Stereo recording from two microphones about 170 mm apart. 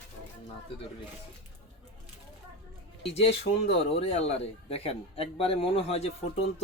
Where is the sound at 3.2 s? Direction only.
40° left (ahead or behind).